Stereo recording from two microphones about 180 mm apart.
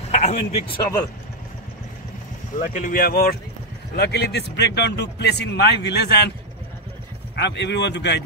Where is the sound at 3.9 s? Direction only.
65° left (ahead or behind).